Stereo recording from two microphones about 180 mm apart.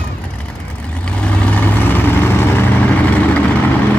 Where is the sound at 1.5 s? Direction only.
10° left (ahead or behind).